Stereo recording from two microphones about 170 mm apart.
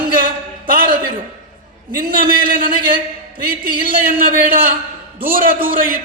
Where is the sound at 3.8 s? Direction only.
55° right (ahead or behind).